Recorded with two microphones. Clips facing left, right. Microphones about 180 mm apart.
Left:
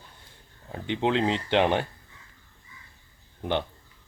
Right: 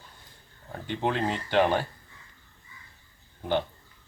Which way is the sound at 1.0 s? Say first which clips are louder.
Left 3 dB; 20° left (ahead or behind).